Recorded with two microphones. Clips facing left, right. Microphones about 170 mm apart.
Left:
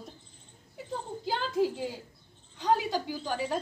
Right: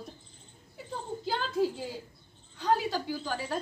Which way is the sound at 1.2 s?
15° left (ahead or behind).